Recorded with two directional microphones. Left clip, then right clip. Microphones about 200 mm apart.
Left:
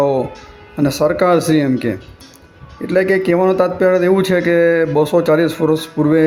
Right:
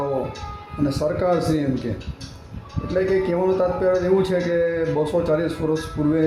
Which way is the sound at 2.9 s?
25° left (ahead or behind).